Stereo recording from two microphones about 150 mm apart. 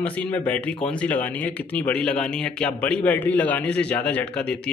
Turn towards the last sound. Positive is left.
turn(degrees=10)  # may be behind; listen again after turning